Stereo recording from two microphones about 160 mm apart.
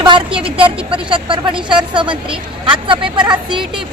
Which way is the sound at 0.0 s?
30° right (ahead or behind).